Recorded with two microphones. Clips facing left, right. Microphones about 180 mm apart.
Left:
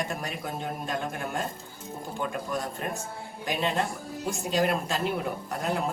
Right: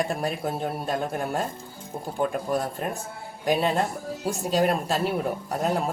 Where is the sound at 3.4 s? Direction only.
40° right (ahead or behind).